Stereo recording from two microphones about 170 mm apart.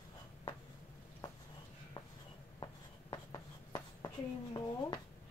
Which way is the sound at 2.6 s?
25° left (ahead or behind).